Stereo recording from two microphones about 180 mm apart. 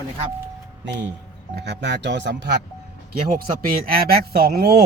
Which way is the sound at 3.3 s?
55° right (ahead or behind).